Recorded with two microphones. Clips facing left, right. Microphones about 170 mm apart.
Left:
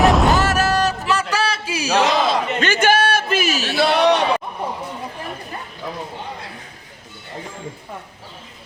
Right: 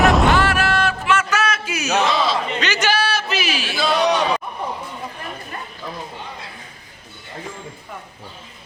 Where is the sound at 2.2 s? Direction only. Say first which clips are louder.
Left 2 dB; 50° left (ahead or behind).